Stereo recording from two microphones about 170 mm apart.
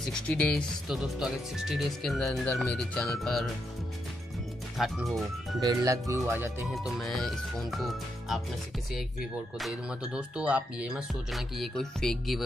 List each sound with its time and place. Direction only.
0.0 s speech: 5° left (ahead or behind)
4.7 s speech: centre (ahead or behind)
5.6 s speech: 20° right (ahead or behind)
6.7 s speech: centre (ahead or behind)
9.6 s speech: 5° right (ahead or behind)